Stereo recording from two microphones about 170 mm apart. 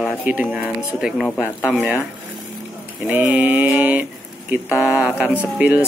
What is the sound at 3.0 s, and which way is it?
Mantra, 10° right (ahead or behind).